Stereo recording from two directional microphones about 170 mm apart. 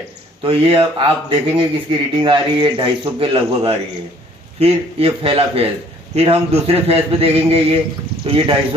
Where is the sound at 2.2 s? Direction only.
30° right (ahead or behind).